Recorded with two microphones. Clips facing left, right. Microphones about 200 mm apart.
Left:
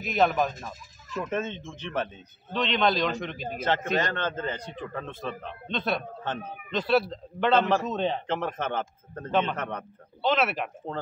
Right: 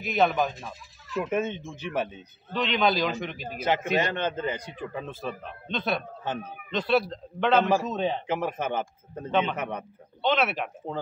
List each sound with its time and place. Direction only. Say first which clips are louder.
0.0 s a man's voice: even; centre (ahead or behind)
0.5 s speech: even; 45° left (ahead or behind)
1.1 s a man's voice: right 3 dB; 10° right (ahead or behind)